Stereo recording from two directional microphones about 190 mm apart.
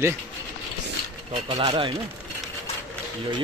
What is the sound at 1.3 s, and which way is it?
Speech, 30° right (ahead or behind).